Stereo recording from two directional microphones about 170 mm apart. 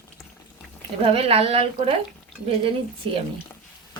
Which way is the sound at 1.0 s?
35° right (ahead or behind).